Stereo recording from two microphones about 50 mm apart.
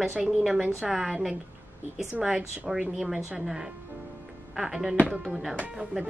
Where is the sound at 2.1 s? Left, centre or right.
Centre.